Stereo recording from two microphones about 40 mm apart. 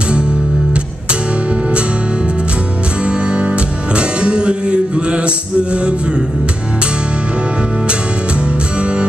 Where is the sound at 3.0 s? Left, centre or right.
Right.